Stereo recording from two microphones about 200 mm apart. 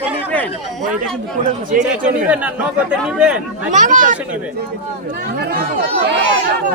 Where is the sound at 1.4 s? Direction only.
40° right (ahead or behind).